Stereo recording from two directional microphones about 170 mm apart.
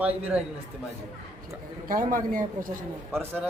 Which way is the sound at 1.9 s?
50° right (ahead or behind).